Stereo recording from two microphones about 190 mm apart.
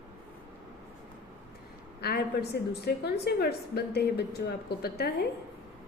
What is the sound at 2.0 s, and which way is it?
A woman's voice, 55° left (ahead or behind).